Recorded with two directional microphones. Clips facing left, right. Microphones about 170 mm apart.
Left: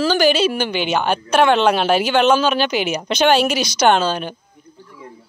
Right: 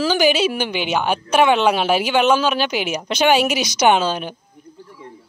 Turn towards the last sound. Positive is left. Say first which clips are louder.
# left 1 dB
turn(degrees=-10)  # may be behind; listen again after turning